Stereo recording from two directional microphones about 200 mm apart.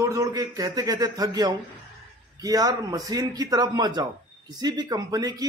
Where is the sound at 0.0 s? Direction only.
15° right (ahead or behind).